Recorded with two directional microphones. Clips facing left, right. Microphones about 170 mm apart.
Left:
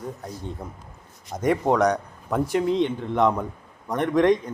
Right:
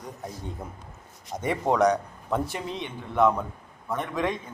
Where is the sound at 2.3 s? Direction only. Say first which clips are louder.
Left 7 dB; 15° left (ahead or behind).